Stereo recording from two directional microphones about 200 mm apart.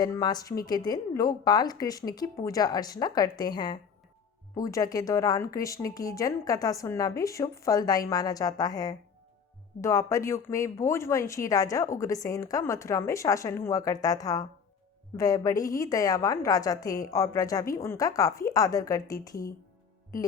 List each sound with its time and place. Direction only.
0.0 s a woman's voice: 20° left (ahead or behind)